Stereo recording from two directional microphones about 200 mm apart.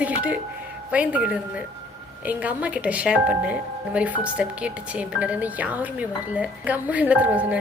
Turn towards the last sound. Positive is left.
turn(degrees=-5)  # may be behind; listen again after turning